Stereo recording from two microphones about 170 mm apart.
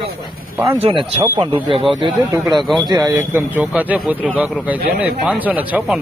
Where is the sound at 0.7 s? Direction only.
35° right (ahead or behind).